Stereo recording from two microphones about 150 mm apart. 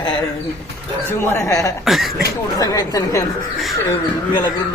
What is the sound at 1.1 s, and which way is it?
Speech, 15° left (ahead or behind).